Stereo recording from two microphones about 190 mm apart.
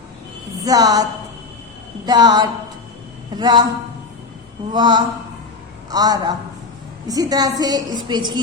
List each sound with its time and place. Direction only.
0.6 s a woman's voice: 20° right (ahead or behind)
2.0 s a woman's voice: 20° right (ahead or behind)
4.7 s a woman's voice: 25° right (ahead or behind)